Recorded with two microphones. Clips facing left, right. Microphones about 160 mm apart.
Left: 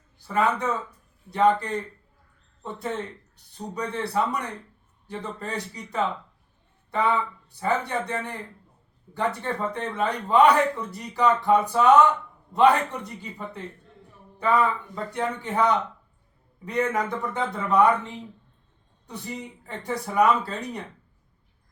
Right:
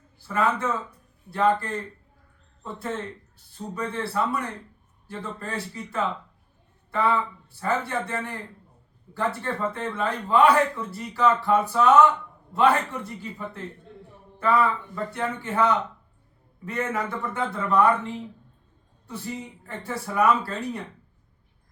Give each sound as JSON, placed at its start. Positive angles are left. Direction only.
{"t": 0.2, "sound": "a man's voice", "side_deg": 15}
{"t": 14.3, "sound": "a man's voice", "side_deg": 15}
{"t": 19.0, "sound": "a man's voice", "side_deg": 15}